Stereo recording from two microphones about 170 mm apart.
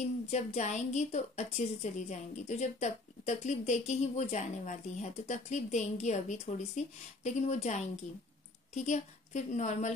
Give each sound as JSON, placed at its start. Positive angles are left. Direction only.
{"t": 0.3, "sound": "a woman's voice", "side_deg": 40}